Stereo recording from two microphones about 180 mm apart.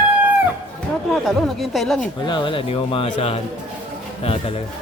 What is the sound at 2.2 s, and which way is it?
Speech, 25° left (ahead or behind).